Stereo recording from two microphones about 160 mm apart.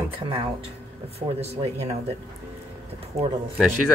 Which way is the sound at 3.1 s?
40° right (ahead or behind).